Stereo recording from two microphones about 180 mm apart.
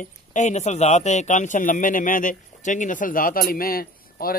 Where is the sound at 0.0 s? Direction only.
45° left (ahead or behind).